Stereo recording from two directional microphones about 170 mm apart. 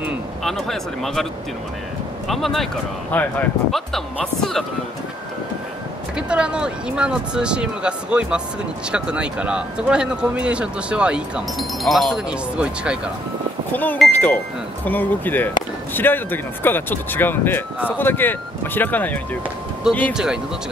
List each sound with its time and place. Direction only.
0.4 s speech: centre (ahead or behind)
2.2 s speech: centre (ahead or behind)
6.1 s speech: 5° right (ahead or behind)
13.7 s speech: 10° left (ahead or behind)
19.9 s speech: 5° right (ahead or behind)